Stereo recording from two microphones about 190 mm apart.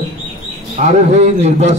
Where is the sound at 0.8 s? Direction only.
35° right (ahead or behind).